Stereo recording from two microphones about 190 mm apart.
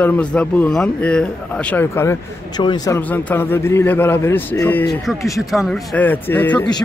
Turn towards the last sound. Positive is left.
turn(degrees=10)  # may be behind; listen again after turning